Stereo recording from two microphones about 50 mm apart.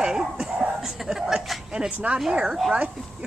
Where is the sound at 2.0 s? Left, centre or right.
Right.